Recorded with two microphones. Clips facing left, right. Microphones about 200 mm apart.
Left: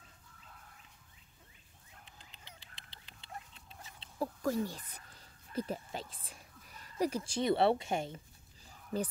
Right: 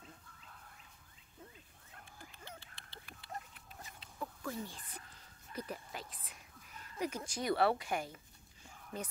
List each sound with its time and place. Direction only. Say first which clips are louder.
2.0 s a sound: right 4 dB; 20° left (ahead or behind)
2.6 s dog: right 3 dB; 15° left (ahead or behind)
4.4 s speech: left 10 dB; 40° left (ahead or behind)
5.5 s speech: left 6 dB; 30° left (ahead or behind)
8.9 s speech: left 8 dB; 40° left (ahead or behind)